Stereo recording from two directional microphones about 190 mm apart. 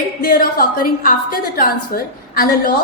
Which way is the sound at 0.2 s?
45° left (ahead or behind).